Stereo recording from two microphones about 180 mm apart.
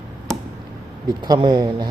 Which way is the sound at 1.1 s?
20° right (ahead or behind).